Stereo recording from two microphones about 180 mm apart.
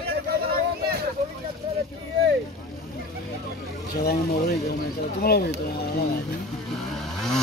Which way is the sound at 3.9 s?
60° left (ahead or behind).